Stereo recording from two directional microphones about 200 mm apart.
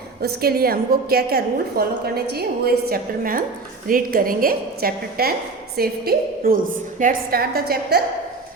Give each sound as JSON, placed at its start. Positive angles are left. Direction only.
{"t": 0.2, "sound": "a woman's voice", "side_deg": -50}